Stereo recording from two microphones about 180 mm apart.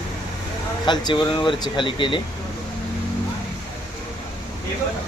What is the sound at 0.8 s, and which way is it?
Speech, 25° left (ahead or behind).